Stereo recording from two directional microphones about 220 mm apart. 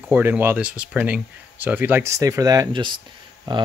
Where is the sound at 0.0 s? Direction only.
10° right (ahead or behind).